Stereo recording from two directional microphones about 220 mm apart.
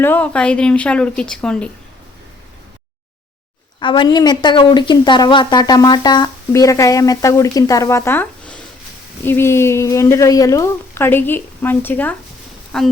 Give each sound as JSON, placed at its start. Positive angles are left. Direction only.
{"t": 0.0, "sound": "a woman's voice", "side_deg": 5}
{"t": 3.8, "sound": "a woman's voice", "side_deg": 20}